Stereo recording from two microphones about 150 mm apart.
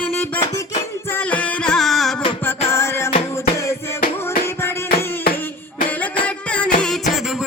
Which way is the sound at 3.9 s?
70° left (ahead or behind).